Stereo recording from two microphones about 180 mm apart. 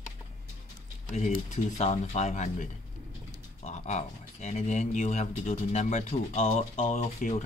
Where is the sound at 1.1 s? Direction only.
45° left (ahead or behind).